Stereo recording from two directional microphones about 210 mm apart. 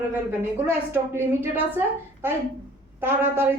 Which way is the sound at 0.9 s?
10° right (ahead or behind).